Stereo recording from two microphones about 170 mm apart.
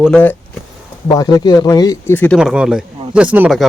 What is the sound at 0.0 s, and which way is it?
Speech, 5° left (ahead or behind).